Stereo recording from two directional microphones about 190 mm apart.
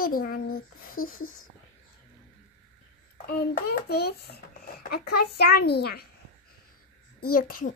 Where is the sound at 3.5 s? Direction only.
50° left (ahead or behind).